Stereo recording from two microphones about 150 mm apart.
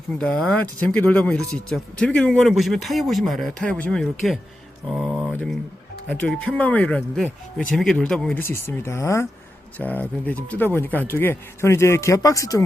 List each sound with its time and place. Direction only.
0.2 s speech: 5° left (ahead or behind)
5.1 s a sound: 10° right (ahead or behind)
6.1 s speech: 5° left (ahead or behind)
8.4 s speech: 15° left (ahead or behind)